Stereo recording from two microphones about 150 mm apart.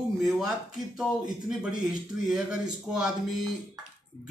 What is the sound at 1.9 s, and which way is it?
A man's voice, 5° right (ahead or behind).